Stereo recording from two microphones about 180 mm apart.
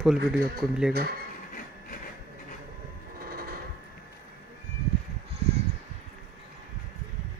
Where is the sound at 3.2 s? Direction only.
55° right (ahead or behind).